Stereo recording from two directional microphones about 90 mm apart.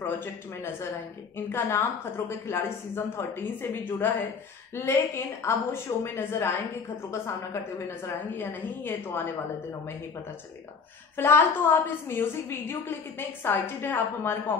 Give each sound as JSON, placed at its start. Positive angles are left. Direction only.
{"t": 0.0, "sound": "a woman's voice", "side_deg": 25}
{"t": 8.4, "sound": "a woman's voice", "side_deg": 25}
{"t": 11.1, "sound": "a woman's voice", "side_deg": 25}